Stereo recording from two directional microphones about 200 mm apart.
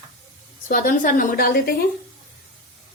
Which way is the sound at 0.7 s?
40° left (ahead or behind).